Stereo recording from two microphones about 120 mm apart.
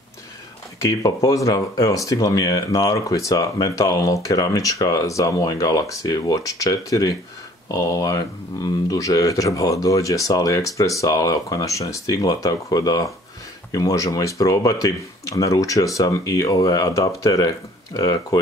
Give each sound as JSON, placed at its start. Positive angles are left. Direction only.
{"t": 0.8, "sound": "speech", "side_deg": 30}